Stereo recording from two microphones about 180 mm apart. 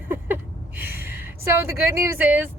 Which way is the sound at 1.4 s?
15° right (ahead or behind).